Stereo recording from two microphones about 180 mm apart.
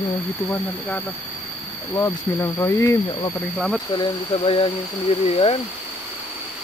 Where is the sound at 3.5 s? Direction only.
Centre (ahead or behind).